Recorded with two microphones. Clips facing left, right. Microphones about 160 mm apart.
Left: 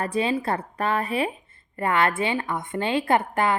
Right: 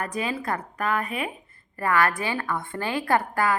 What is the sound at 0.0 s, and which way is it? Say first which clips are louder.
A woman's voice: left 5 dB; 30° left (ahead or behind).